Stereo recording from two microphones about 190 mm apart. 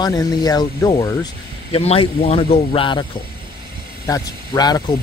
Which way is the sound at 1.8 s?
35° left (ahead or behind).